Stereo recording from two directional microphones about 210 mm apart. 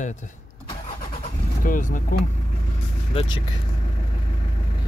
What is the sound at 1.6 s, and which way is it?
Speech, 40° left (ahead or behind).